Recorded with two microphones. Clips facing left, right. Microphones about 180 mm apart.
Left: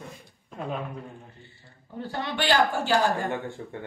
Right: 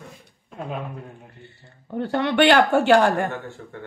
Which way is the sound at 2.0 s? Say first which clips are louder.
Right 11 dB; 65° right (ahead or behind).